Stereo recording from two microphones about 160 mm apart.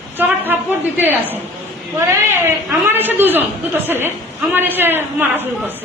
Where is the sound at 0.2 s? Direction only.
10° right (ahead or behind).